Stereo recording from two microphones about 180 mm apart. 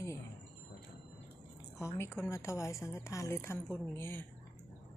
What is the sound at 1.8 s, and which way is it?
A woman's voice, 15° left (ahead or behind).